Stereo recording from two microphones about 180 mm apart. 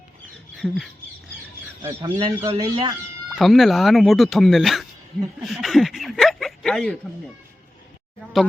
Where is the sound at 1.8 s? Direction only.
20° right (ahead or behind).